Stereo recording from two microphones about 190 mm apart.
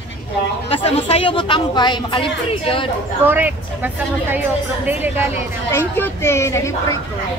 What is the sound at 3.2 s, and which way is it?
Speech, 10° right (ahead or behind).